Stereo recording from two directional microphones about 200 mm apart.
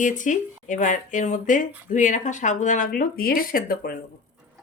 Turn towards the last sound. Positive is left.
turn(degrees=45)  # may be behind; listen again after turning